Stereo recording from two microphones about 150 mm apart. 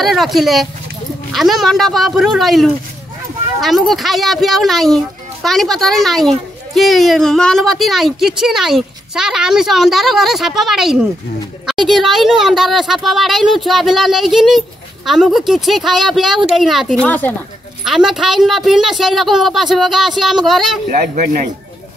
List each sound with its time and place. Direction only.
0.0 s a child's voice: centre (ahead or behind)
17.0 s speech: 10° left (ahead or behind)
17.8 s a child's voice: centre (ahead or behind)
20.9 s speech: 60° right (ahead or behind)